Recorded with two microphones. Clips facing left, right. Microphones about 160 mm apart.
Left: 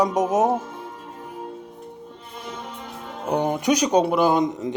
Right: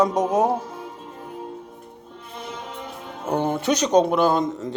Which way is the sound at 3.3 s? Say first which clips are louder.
Left 1 dB; 15° left (ahead or behind).